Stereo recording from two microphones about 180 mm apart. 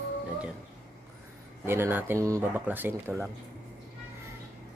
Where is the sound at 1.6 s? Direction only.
15° right (ahead or behind).